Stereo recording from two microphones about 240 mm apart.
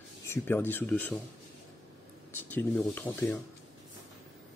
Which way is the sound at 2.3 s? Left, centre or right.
Centre.